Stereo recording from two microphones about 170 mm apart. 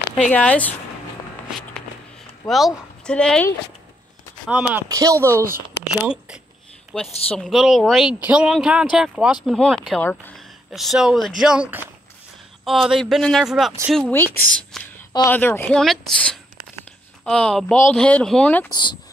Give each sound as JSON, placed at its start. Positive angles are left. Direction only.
{"t": 0.3, "sound": "a woman's voice", "side_deg": 10}
{"t": 2.4, "sound": "speech", "side_deg": 0}
{"t": 4.5, "sound": "speech", "side_deg": -10}
{"t": 4.8, "sound": "speech", "side_deg": -20}
{"t": 6.9, "sound": "speech", "side_deg": 5}
{"t": 10.7, "sound": "speech", "side_deg": 0}
{"t": 14.1, "sound": "a woman's voice", "side_deg": 10}
{"t": 18.7, "sound": "speech", "side_deg": 25}